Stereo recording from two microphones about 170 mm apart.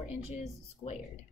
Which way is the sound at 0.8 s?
30° left (ahead or behind).